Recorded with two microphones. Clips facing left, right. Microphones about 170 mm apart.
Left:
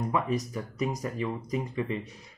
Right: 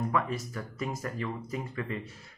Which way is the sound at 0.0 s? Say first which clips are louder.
Left 2 dB; 20° left (ahead or behind).